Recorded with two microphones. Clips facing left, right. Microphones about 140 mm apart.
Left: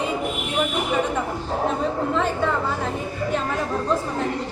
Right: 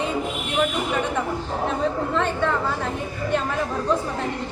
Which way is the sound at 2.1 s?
Centre (ahead or behind).